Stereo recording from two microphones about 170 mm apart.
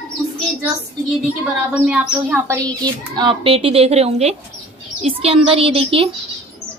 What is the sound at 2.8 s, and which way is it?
A child's voice, 25° right (ahead or behind).